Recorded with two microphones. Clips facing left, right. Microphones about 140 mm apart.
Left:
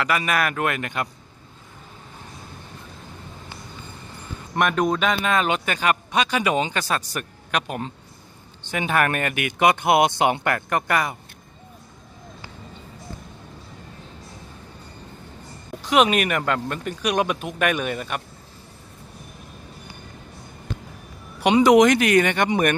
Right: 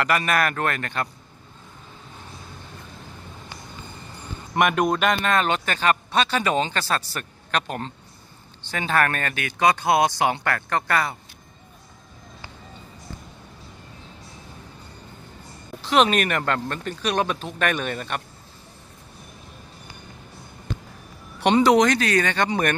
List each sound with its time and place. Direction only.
0.0 s speech: 5° left (ahead or behind)
4.6 s speech: 5° right (ahead or behind); by 11.1 s 15° left (ahead or behind)
15.8 s speech: 10° left (ahead or behind)
21.4 s speech: 10° left (ahead or behind)